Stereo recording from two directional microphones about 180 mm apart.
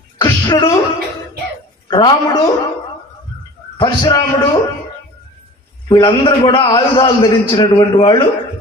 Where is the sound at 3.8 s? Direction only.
25° left (ahead or behind).